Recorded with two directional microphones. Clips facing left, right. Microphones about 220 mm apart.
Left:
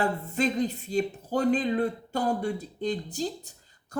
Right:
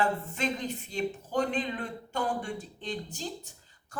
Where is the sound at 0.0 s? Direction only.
35° left (ahead or behind).